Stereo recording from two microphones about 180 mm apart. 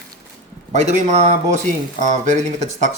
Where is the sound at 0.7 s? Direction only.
40° right (ahead or behind).